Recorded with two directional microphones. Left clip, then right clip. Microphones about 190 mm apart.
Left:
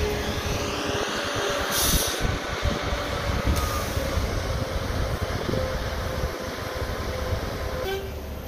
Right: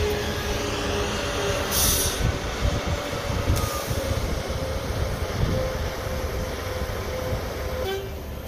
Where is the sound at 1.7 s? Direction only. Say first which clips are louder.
Even; 45° right (ahead or behind).